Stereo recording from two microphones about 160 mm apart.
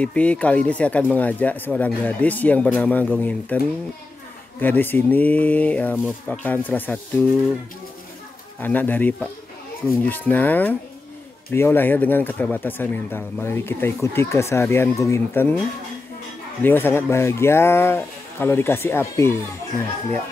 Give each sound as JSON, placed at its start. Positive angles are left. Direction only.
{"t": 0.0, "sound": "speech", "side_deg": 10}
{"t": 8.5, "sound": "speech", "side_deg": 10}
{"t": 16.6, "sound": "speech", "side_deg": 15}